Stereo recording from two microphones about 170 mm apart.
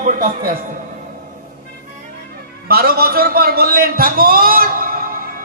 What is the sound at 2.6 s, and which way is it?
A man's voice, 65° right (ahead or behind).